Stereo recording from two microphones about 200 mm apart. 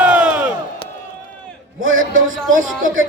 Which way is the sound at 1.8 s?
80° right.